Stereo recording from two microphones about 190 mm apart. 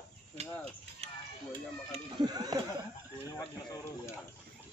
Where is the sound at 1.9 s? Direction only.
20° right (ahead or behind).